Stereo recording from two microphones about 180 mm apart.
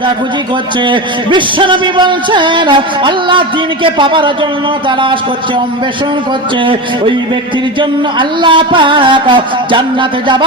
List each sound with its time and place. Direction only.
0.9 s music: 25° right (ahead or behind)
7.8 s music: 25° right (ahead or behind)